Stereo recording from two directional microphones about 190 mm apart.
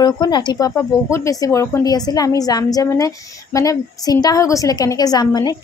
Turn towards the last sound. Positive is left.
turn(degrees=20)  # may be behind; listen again after turning